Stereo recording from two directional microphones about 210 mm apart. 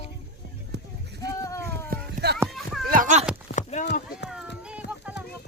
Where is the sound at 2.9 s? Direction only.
40° right (ahead or behind).